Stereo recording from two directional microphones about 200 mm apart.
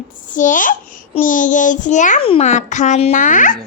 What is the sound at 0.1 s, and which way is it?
A child's voice, 40° left (ahead or behind).